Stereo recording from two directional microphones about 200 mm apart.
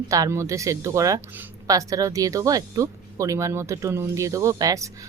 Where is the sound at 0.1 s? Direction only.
15° right (ahead or behind).